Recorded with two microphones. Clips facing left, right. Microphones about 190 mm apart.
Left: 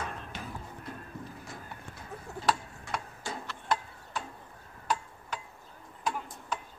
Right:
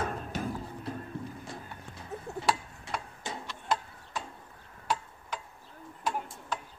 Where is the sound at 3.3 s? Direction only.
20° right (ahead or behind).